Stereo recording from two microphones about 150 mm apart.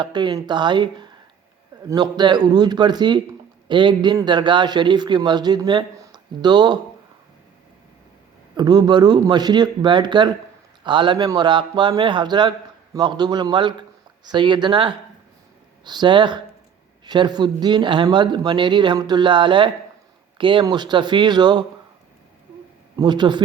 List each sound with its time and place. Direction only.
0.0 s a man's voice: 30° right (ahead or behind)
8.5 s a man's voice: 25° right (ahead or behind)
23.0 s speech: 30° right (ahead or behind)